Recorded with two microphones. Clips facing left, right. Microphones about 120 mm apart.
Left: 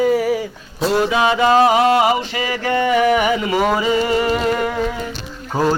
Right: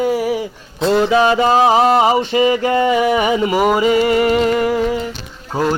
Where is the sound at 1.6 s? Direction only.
30° right (ahead or behind).